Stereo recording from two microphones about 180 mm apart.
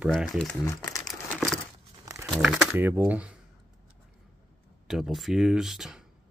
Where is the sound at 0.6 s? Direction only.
20° left (ahead or behind).